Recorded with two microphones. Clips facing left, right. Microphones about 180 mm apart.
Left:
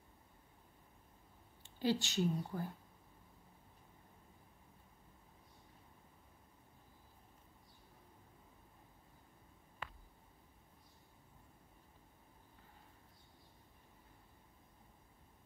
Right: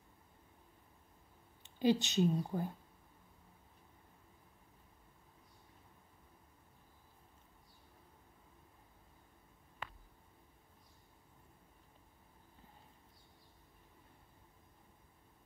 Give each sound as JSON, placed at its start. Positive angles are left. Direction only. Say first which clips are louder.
{"t": 1.6, "sound": "speech", "louder": "right 5 dB", "side_deg": -20}